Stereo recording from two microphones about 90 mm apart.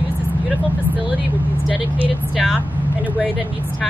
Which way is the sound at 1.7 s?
15° right (ahead or behind).